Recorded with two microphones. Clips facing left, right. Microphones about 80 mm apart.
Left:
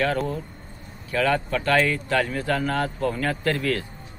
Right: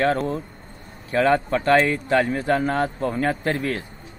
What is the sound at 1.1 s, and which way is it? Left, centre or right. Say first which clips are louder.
Speech: right 4 dB; right.